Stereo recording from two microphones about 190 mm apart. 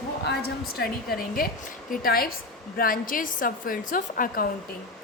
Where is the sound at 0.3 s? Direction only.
60° left (ahead or behind).